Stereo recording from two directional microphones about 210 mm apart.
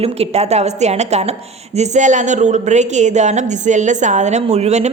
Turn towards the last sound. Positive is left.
turn(degrees=-30)  # may be behind; listen again after turning